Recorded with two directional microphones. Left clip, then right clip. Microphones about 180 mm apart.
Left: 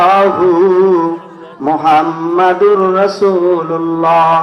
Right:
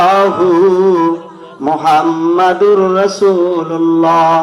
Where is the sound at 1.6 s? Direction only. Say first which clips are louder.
Even; 30° right (ahead or behind).